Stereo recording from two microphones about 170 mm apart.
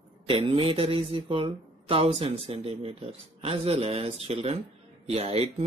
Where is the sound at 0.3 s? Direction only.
30° right (ahead or behind).